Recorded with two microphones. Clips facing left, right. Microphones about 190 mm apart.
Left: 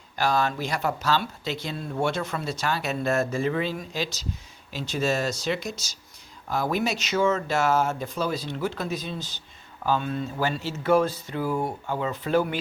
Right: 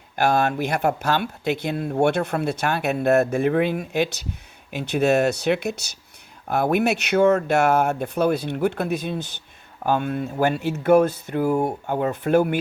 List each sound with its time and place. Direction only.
0.2 s speech: 60° right (ahead or behind)